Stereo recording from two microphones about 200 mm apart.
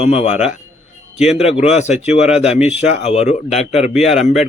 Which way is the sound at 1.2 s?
5° right (ahead or behind).